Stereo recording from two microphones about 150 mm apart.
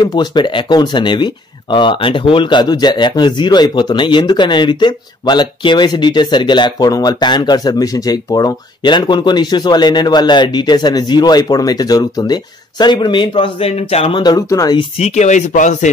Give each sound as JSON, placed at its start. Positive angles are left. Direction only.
{"t": 0.0, "sound": "speech", "side_deg": 30}
{"t": 15.0, "sound": "speech", "side_deg": 45}